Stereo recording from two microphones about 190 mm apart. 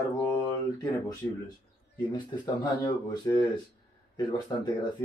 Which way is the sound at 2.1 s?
25° left (ahead or behind).